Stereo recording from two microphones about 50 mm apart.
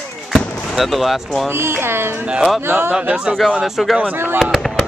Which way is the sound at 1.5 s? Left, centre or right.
Right.